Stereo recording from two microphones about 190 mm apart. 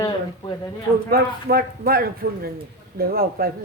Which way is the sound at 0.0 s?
20° left (ahead or behind).